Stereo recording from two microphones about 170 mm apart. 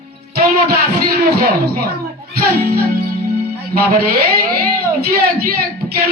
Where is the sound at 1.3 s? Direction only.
70° right (ahead or behind).